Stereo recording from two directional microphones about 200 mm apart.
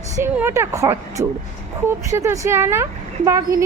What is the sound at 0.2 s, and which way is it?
Speech, 10° right (ahead or behind).